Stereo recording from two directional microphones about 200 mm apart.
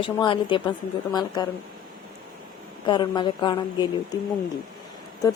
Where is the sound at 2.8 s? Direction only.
20° left (ahead or behind).